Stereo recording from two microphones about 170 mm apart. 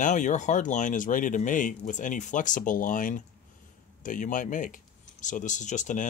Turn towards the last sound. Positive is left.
turn(degrees=45)  # may be behind; listen again after turning